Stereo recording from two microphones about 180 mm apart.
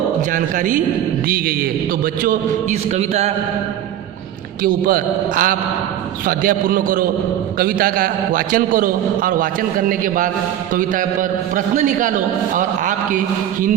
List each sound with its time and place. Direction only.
0.3 s a man's voice: 45° right (ahead or behind)
2.2 s a sound: 40° right (ahead or behind)
4.6 s a man's voice: 55° right (ahead or behind)
10.8 s a man's voice: 45° right (ahead or behind)